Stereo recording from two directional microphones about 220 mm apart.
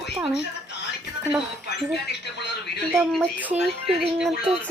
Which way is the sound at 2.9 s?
Centre (ahead or behind).